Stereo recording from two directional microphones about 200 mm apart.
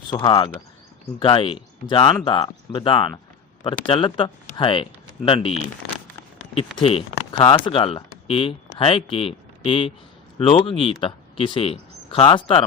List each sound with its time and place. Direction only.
0.1 s speech: 20° left (ahead or behind)
6.4 s a sound: 30° left (ahead or behind)
6.7 s speech: 30° left (ahead or behind)